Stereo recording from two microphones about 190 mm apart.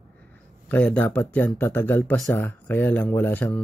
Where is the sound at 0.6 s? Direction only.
10° left (ahead or behind).